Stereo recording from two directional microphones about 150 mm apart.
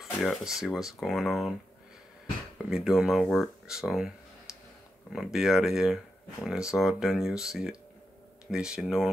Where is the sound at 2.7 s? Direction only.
5° right (ahead or behind).